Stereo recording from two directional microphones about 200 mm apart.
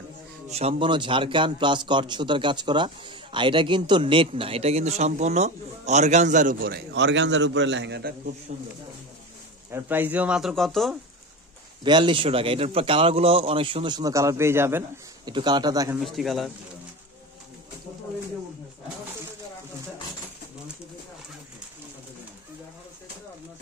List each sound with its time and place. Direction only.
0.5 s a man's voice: 30° right (ahead or behind); by 8.1 s 60° right (ahead or behind)
8.5 s speech: 40° right (ahead or behind)
9.7 s speech: 10° right (ahead or behind)
11.8 s a man's voice: 25° right (ahead or behind)
15.3 s a man's voice: 20° right (ahead or behind)
16.0 s speech: centre (ahead or behind)